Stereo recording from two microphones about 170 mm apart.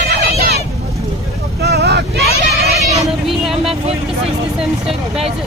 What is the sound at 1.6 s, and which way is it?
Vehicle, 75° right (ahead or behind).